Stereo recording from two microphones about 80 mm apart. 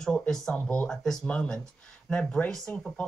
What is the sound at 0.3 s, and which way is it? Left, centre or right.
Speech, centre.